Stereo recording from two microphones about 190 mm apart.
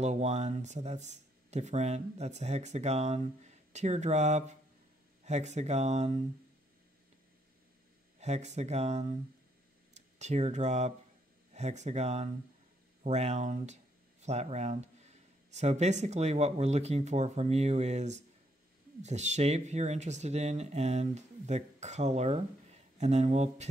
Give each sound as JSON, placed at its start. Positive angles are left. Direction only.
{"t": 0.0, "sound": "speech", "side_deg": -35}
{"t": 8.2, "sound": "speech", "side_deg": -35}